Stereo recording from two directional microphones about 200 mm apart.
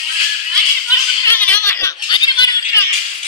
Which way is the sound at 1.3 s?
10° left (ahead or behind).